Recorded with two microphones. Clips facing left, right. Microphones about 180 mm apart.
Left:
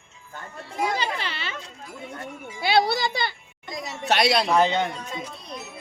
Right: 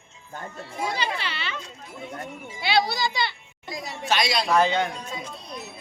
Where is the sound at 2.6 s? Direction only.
50° left (ahead or behind).